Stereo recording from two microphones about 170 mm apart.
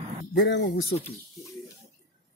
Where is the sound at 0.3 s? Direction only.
90° left.